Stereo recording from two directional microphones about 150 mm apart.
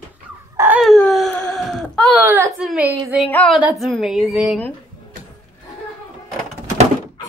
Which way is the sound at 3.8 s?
Centre (ahead or behind).